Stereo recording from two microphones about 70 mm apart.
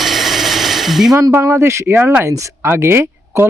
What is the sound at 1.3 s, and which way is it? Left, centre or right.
Speech, right.